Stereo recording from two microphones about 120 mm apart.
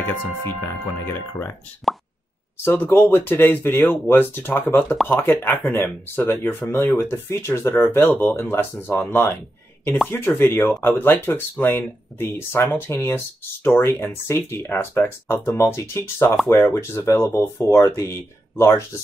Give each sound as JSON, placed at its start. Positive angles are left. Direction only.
{"t": 0.7, "sound": "speech", "side_deg": 20}
{"t": 2.6, "sound": "speech", "side_deg": 20}